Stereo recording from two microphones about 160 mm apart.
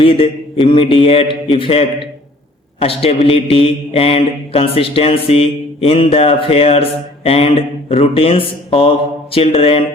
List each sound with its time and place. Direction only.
0.0 s mantra: 35° left (ahead or behind)